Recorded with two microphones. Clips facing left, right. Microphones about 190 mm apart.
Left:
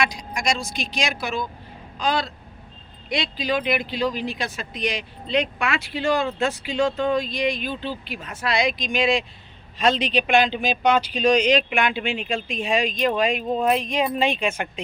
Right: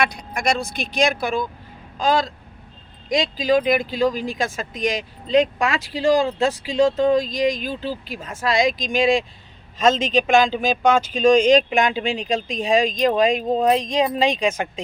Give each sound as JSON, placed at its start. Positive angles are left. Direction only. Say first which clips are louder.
{"t": 0.0, "sound": "a woman's voice", "louder": "right 3 dB", "side_deg": -60}